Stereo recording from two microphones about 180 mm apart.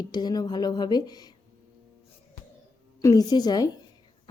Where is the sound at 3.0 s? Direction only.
20° left (ahead or behind).